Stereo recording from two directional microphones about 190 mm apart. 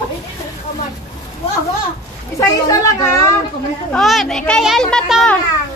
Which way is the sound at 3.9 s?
Centre (ahead or behind).